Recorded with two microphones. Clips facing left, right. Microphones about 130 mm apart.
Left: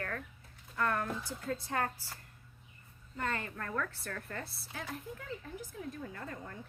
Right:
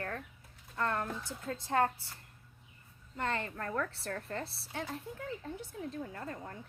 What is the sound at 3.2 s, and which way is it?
A woman's voice, 30° right (ahead or behind).